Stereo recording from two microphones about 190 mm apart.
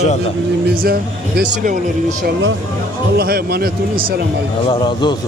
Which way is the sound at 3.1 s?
55° right (ahead or behind).